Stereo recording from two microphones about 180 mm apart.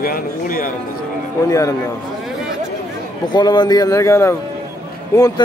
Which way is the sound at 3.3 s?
25° left (ahead or behind).